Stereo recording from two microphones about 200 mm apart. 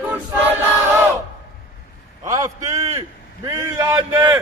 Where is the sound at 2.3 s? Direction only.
15° right (ahead or behind).